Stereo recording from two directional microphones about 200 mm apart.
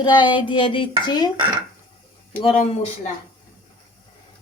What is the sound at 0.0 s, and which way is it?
A woman's voice, 20° left (ahead or behind).